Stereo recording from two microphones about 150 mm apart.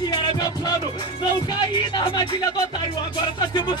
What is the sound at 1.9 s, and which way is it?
Speech, 30° left (ahead or behind).